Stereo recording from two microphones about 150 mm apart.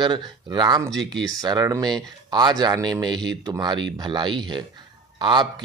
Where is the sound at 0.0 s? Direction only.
30° right (ahead or behind).